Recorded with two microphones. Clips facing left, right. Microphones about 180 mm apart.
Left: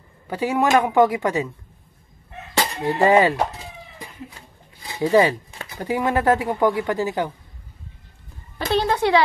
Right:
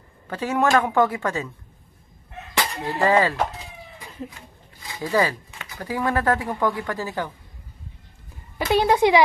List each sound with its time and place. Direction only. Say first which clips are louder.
0.3 s speech: left 2 dB; 10° left (ahead or behind)
2.5 s speech: left 4 dB; 20° left (ahead or behind)
4.9 s a sound: left 6 dB; 25° left (ahead or behind)
5.9 s speech: left 3 dB; 20° left (ahead or behind)
8.5 s speech: right 2 dB; 10° right (ahead or behind)